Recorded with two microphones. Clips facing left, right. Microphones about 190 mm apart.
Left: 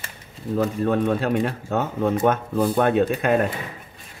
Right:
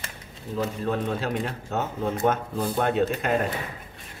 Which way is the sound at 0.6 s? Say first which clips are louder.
Left 6 dB; 55° left (ahead or behind).